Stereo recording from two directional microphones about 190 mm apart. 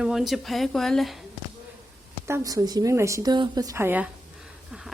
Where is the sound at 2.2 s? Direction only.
15° right (ahead or behind).